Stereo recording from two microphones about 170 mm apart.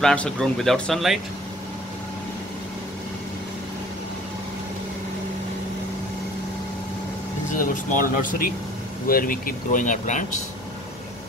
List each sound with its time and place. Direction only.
0.0 s speech: 5° left (ahead or behind)
7.5 s speech: 50° left (ahead or behind)